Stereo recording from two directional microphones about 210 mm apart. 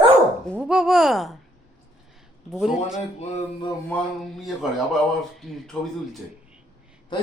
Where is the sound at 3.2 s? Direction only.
30° left (ahead or behind).